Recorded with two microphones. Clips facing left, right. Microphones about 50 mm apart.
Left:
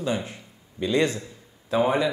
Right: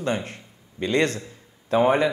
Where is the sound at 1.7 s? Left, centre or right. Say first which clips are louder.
Right 3 dB; right.